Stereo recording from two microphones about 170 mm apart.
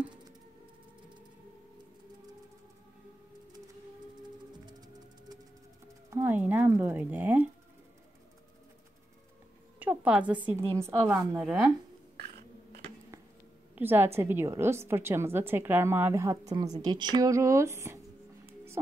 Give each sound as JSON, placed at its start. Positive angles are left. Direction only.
{"t": 4.6, "sound": "music", "side_deg": -25}
{"t": 6.0, "sound": "a sound", "side_deg": -15}
{"t": 9.8, "sound": "a woman's voice", "side_deg": -10}
{"t": 13.7, "sound": "a woman's voice", "side_deg": -15}